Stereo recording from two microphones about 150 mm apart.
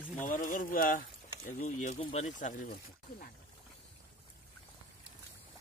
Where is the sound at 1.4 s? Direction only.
55° left (ahead or behind).